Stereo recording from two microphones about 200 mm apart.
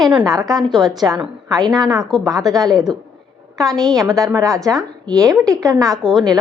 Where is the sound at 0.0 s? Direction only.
5° right (ahead or behind).